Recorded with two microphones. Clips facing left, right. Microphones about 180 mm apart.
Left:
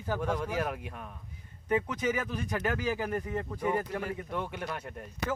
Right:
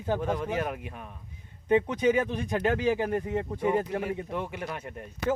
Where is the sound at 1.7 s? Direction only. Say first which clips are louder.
Right 6 dB; 25° right (ahead or behind).